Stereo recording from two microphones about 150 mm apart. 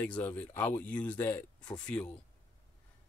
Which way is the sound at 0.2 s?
10° left (ahead or behind).